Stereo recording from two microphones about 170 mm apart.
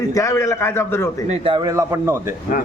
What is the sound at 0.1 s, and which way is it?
Speech, 20° left (ahead or behind).